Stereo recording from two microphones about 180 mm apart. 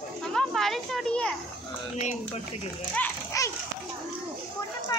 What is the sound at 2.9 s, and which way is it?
Children playing, 15° left (ahead or behind).